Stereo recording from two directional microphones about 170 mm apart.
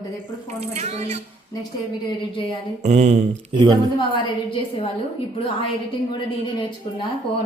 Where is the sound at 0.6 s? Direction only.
40° right (ahead or behind).